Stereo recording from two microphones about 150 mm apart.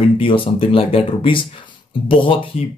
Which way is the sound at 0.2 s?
35° left (ahead or behind).